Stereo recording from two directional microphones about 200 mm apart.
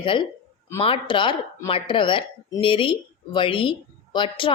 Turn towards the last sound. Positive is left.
turn(degrees=25)  # may be behind; listen again after turning